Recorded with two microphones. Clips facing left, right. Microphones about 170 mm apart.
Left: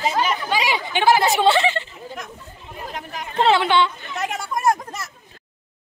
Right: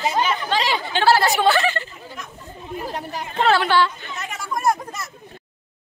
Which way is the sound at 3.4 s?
20° left (ahead or behind).